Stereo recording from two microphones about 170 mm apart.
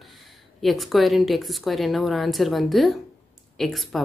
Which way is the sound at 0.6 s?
Centre (ahead or behind).